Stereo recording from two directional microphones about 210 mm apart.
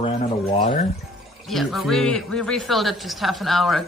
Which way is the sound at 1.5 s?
Centre (ahead or behind).